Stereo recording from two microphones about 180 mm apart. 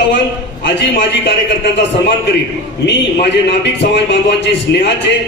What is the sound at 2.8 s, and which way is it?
A man's voice, 75° left (ahead or behind).